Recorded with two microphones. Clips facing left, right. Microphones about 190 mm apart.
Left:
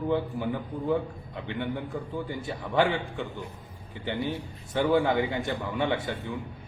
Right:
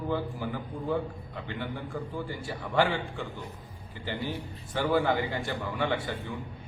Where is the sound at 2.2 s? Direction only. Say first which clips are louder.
Left 2 dB; 20° left (ahead or behind).